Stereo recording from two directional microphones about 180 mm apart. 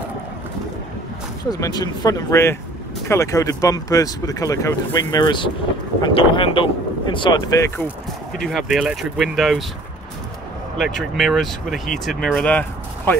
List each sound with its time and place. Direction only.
1.5 s speech: 20° left (ahead or behind)
8.4 s speech: centre (ahead or behind)
10.8 s speech: centre (ahead or behind)